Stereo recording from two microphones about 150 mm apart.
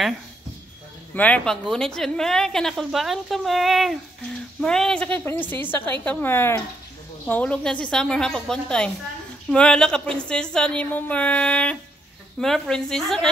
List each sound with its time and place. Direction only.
1.1 s a woman's voice: 10° left (ahead or behind)